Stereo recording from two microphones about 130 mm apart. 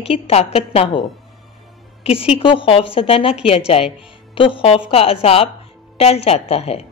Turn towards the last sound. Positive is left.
turn(degrees=50)  # may be behind; listen again after turning